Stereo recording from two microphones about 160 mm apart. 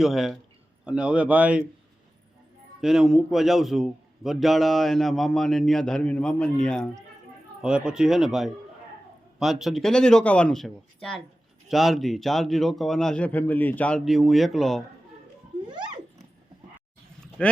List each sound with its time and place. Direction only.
0.0 s a man's voice: centre (ahead or behind)
2.8 s a man's voice: centre (ahead or behind)
15.6 s a sound: 30° right (ahead or behind)
17.4 s speech: 5° left (ahead or behind)